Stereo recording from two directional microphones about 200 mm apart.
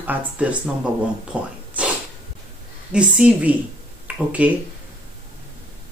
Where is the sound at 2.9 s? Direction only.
5° right (ahead or behind).